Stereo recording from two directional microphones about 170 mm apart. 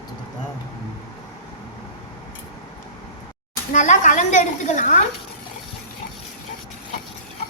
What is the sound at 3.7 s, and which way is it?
A woman's voice, 45° left (ahead or behind).